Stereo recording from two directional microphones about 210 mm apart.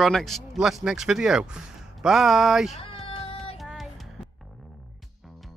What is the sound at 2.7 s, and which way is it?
Cat, 25° left (ahead or behind).